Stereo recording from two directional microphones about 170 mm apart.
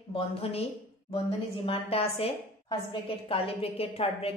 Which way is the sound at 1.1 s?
35° left (ahead or behind).